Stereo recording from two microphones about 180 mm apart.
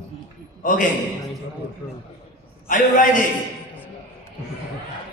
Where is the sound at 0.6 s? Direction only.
45° left (ahead or behind).